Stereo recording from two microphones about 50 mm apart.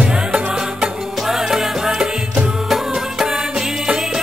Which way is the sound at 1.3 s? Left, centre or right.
Centre.